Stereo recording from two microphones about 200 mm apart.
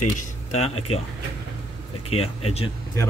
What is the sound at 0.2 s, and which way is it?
Speech, 35° left (ahead or behind).